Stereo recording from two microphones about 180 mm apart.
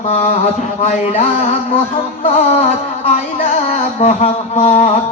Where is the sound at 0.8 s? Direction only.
35° left (ahead or behind).